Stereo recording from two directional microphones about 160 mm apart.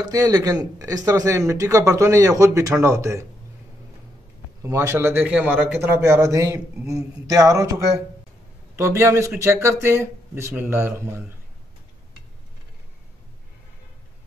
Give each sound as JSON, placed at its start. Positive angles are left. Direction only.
{"t": 0.0, "sound": "speech", "side_deg": -20}
{"t": 4.6, "sound": "speech", "side_deg": -15}